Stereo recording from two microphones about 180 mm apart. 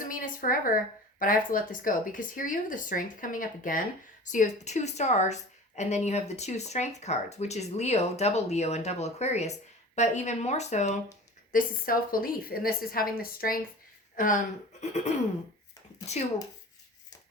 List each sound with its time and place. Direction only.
0.1 s a sound: 50° left (ahead or behind)
1.2 s a woman's voice: 50° left (ahead or behind)
11.5 s a woman's voice: 50° left (ahead or behind)